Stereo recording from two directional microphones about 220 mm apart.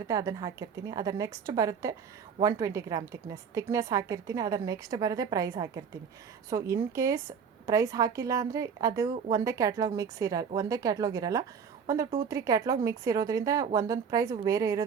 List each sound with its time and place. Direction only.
0.1 s a woman's voice: 15° right (ahead or behind)